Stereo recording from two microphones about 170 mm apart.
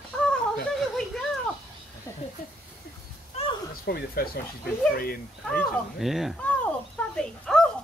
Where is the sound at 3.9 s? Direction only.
65° left (ahead or behind).